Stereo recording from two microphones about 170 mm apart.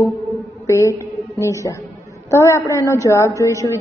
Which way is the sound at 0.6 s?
15° left (ahead or behind).